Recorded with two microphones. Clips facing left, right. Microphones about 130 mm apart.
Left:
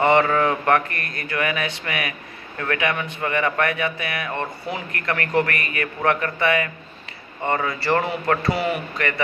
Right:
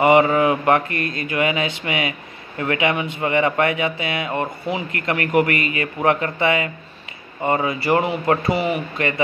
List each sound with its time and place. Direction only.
0.0 s a man's voice: 15° right (ahead or behind)
8.5 s speech: centre (ahead or behind)